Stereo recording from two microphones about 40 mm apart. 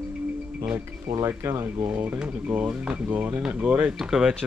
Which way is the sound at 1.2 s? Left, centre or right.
Right.